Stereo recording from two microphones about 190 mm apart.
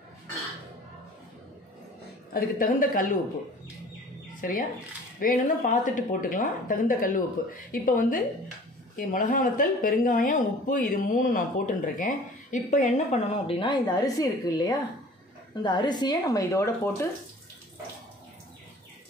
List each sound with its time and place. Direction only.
2.3 s speech: 45° left (ahead or behind)
4.4 s speech: 45° left (ahead or behind); by 16.9 s 15° left (ahead or behind)